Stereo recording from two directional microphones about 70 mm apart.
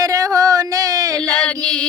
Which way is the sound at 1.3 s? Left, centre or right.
Centre.